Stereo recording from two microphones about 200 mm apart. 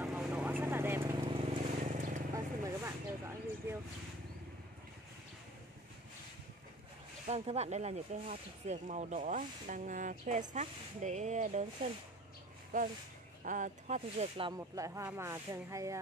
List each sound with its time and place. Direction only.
0.0 s vehicle: 10° right (ahead or behind)
1.1 s vehicle: 25° right (ahead or behind)
2.3 s a sound: 15° right (ahead or behind)
7.2 s speech: 30° right (ahead or behind)
14.6 s speech: 15° right (ahead or behind)